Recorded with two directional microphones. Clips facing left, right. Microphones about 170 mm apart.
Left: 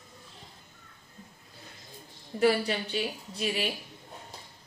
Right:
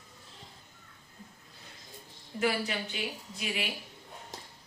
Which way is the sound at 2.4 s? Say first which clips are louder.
Left 6 dB; 35° left (ahead or behind).